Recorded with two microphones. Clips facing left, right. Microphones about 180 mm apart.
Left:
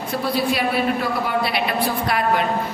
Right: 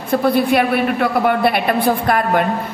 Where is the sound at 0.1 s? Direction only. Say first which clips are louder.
Right 8 dB; 55° right (ahead or behind).